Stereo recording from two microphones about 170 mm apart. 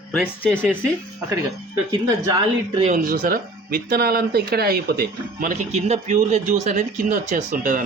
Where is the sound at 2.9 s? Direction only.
60° right (ahead or behind).